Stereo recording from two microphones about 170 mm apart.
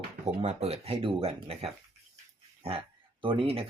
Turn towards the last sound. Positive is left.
turn(degrees=-35)  # may be behind; listen again after turning